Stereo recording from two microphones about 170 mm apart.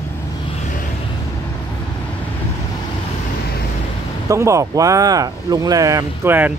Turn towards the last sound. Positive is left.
turn(degrees=-10)  # may be behind; listen again after turning